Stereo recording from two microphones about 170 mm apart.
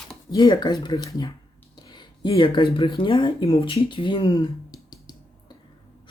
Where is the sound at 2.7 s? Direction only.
30° left (ahead or behind).